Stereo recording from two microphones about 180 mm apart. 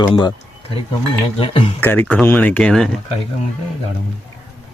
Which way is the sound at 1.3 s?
30° left (ahead or behind).